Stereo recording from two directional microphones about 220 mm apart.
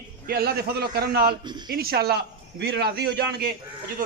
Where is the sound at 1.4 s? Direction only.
20° right (ahead or behind).